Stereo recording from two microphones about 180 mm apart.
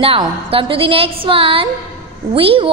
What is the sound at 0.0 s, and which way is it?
A woman's voice, 30° right (ahead or behind).